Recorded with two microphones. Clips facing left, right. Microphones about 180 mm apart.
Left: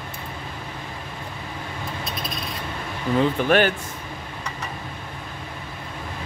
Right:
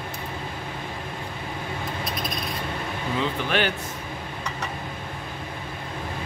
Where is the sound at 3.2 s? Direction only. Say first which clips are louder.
Left 7 dB; 45° left (ahead or behind).